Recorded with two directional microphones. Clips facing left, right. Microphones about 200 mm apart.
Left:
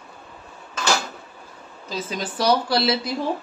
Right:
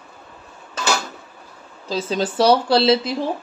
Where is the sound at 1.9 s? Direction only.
30° right (ahead or behind).